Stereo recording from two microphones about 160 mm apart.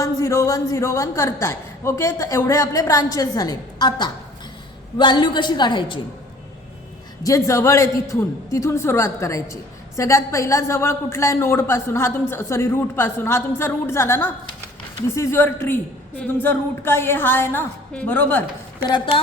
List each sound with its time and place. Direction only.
0.0 s a man's voice: 20° left (ahead or behind)
7.3 s a man's voice: 20° left (ahead or behind)
18.9 s a man's voice: 30° left (ahead or behind)